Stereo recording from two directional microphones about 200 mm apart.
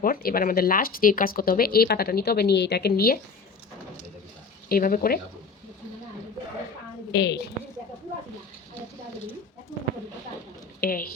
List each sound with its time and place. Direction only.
0.0 s speech: 45° left (ahead or behind)
4.7 s speech: 45° left (ahead or behind)
7.1 s a woman's voice: 60° left (ahead or behind)
10.8 s a woman's voice: 45° left (ahead or behind)